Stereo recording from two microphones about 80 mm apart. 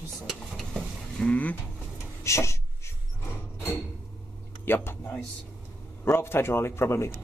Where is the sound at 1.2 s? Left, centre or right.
Centre.